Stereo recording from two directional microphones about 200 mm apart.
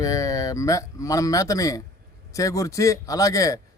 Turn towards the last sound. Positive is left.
turn(degrees=15)  # may be behind; listen again after turning